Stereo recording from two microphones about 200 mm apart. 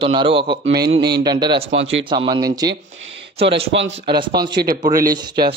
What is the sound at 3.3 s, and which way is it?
Speech, 60° right (ahead or behind).